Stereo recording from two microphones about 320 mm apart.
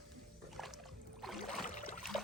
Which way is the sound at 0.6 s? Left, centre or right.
Centre.